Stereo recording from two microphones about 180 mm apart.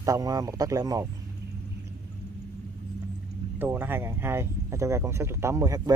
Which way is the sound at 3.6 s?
10° right (ahead or behind).